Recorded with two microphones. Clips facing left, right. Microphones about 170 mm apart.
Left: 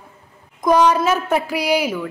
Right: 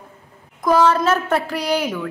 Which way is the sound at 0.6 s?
15° left (ahead or behind).